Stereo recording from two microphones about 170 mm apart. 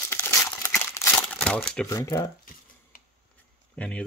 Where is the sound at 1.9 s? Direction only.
20° left (ahead or behind).